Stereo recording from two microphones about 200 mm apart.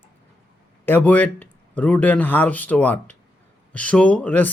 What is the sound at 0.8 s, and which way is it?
Speech, 10° left (ahead or behind).